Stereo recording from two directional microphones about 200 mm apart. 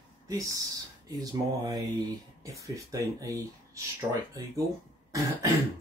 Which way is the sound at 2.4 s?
15° right (ahead or behind).